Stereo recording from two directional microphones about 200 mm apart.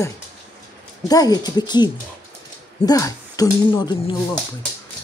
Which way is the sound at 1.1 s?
20° left (ahead or behind).